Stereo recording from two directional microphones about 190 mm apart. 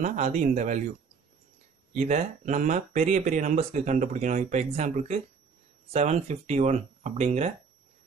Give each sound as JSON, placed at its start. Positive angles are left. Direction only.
{"t": 0.0, "sound": "speech", "side_deg": -40}
{"t": 2.0, "sound": "speech", "side_deg": -40}